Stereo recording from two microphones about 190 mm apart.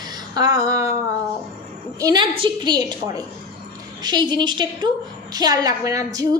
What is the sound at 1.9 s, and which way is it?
A woman's voice, 20° right (ahead or behind).